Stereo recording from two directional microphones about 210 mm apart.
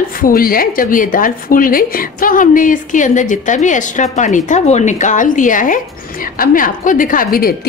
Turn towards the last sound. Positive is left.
turn(degrees=45)  # may be behind; listen again after turning